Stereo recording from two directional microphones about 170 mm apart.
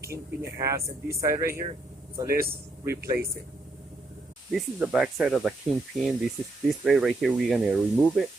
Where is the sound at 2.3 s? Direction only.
60° right (ahead or behind).